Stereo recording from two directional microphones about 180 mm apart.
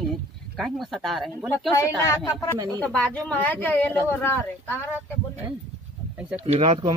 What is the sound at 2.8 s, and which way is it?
A woman's voice, 5° left (ahead or behind).